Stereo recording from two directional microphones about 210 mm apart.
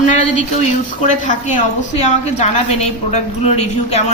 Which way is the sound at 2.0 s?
30° left (ahead or behind).